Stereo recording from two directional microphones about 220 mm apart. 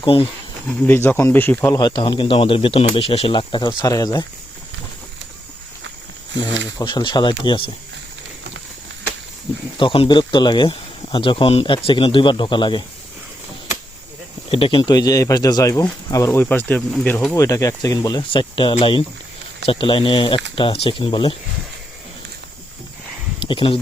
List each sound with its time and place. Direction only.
0.0 s speech: 25° left (ahead or behind)
0.9 s speech: 10° left (ahead or behind)
1.8 s speech: 20° left (ahead or behind)
6.5 s speech: 55° right (ahead or behind)
6.7 s speech: 20° left (ahead or behind)
9.7 s speech: 25° left (ahead or behind)
14.5 s speech: 25° left (ahead or behind)
23.4 s speech: 25° left (ahead or behind)